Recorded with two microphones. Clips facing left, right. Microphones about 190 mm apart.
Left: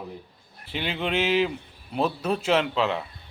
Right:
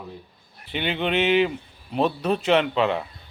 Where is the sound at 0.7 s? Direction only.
Centre (ahead or behind).